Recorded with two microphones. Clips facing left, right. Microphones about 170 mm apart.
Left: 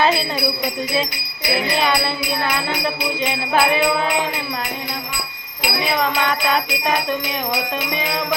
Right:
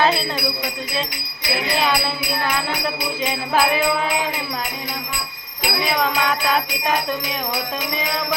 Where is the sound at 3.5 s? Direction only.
Centre (ahead or behind).